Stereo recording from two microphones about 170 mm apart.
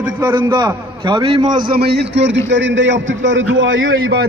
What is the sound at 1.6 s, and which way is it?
A man's voice, 65° right (ahead or behind).